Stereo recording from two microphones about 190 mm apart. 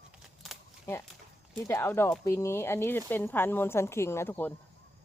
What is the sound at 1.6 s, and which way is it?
Speech, 15° left (ahead or behind).